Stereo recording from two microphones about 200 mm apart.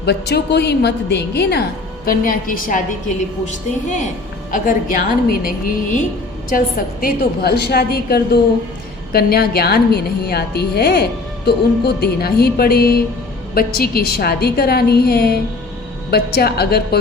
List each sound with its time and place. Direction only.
0.0 s a woman's voice: 55° left (ahead or behind)